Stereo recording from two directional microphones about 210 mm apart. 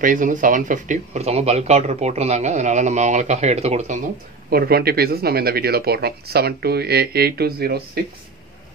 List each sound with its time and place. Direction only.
0.0 s speech: 40° right (ahead or behind)
4.5 s speech: 45° right (ahead or behind)